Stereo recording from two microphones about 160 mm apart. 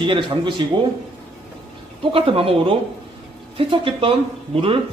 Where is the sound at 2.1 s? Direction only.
35° right (ahead or behind).